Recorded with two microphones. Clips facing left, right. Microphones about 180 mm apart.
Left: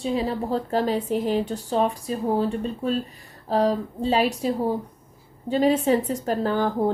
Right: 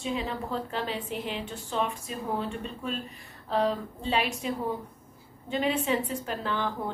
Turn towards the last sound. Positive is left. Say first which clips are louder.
# left 9 dB
turn(degrees=40)  # may be behind; listen again after turning